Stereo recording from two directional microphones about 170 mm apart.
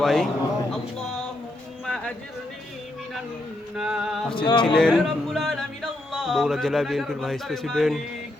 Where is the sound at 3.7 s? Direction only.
5° right (ahead or behind).